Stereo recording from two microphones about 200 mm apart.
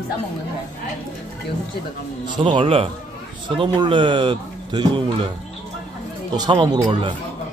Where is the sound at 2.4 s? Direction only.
25° right (ahead or behind).